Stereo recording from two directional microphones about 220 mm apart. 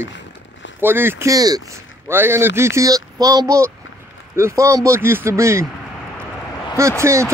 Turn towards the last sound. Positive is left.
turn(degrees=-15)  # may be behind; listen again after turning